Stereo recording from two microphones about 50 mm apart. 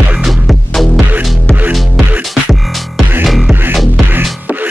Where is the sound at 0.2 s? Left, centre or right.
Centre.